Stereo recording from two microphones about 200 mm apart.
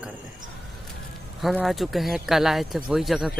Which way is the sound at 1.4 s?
Centre (ahead or behind).